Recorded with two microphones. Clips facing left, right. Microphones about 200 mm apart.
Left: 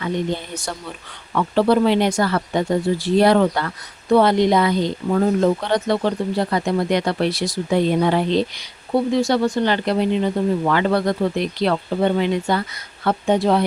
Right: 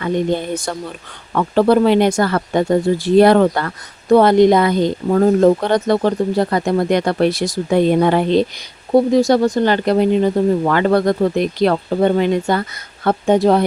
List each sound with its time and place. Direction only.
1.3 s speech: 50° right (ahead or behind)
8.9 s speech: 40° right (ahead or behind)